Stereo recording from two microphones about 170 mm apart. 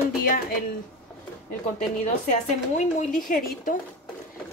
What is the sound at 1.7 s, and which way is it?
A woman's voice, 45° left (ahead or behind).